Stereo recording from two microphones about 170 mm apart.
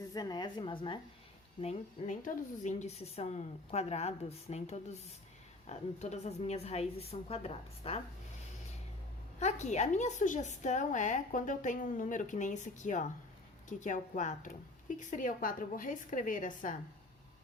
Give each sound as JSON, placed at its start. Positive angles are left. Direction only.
{"t": 0.1, "sound": "a woman's voice", "side_deg": 25}
{"t": 1.6, "sound": "speech", "side_deg": 50}
{"t": 9.4, "sound": "a woman's voice", "side_deg": 45}